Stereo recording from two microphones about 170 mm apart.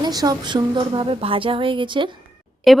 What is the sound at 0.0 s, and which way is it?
Speech, 25° right (ahead or behind).